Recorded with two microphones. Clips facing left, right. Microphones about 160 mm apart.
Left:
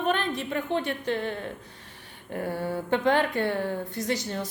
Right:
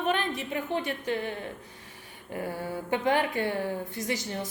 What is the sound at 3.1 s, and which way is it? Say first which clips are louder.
Speech: left 2 dB; 10° right (ahead or behind).